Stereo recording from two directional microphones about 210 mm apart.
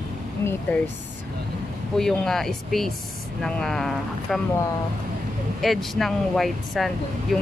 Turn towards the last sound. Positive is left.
turn(degrees=0)  # may be behind; listen again after turning